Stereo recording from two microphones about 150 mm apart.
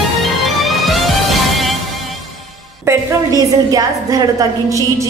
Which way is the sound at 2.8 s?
20° right (ahead or behind).